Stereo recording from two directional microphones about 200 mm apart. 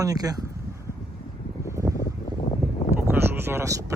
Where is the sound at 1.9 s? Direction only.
50° left (ahead or behind).